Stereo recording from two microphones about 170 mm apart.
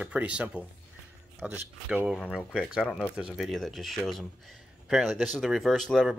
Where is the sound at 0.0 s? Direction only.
10° right (ahead or behind).